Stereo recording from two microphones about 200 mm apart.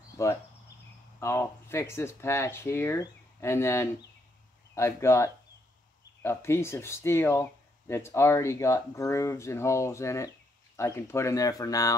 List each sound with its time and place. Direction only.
0.2 s speech: 15° left (ahead or behind)